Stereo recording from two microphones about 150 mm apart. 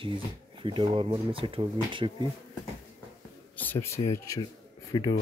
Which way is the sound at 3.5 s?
10° left (ahead or behind).